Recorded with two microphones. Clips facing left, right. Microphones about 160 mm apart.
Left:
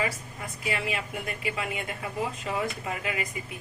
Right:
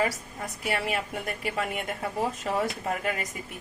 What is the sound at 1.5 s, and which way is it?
Speech, 45° right (ahead or behind).